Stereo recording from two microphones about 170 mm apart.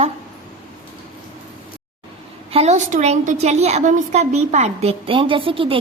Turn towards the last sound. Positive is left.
turn(degrees=-30)  # may be behind; listen again after turning